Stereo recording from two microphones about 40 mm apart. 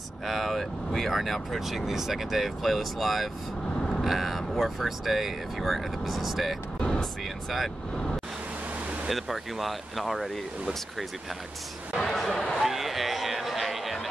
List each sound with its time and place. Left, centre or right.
0.3 s speech: centre
6.8 s vehicle: centre
7.4 s speech: centre
9.1 s speech: centre
12.0 s a sound: centre